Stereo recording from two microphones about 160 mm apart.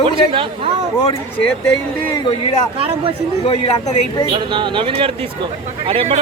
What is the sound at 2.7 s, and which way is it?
Speech, 35° right (ahead or behind).